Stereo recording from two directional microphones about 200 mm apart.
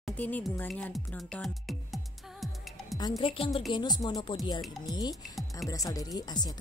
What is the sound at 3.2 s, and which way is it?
Speech, 30° left (ahead or behind).